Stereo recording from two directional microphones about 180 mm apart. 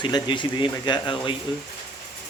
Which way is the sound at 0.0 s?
25° left (ahead or behind).